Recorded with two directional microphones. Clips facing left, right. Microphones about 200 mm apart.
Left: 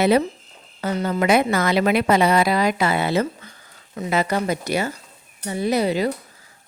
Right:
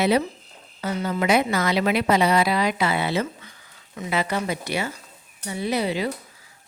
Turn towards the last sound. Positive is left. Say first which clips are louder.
# left 4 dB
turn(degrees=45)  # may be behind; listen again after turning